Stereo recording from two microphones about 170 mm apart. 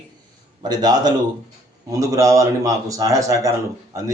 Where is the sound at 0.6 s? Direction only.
25° right (ahead or behind).